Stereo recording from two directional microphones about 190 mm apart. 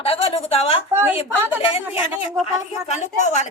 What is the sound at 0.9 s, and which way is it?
Speech, 10° right (ahead or behind).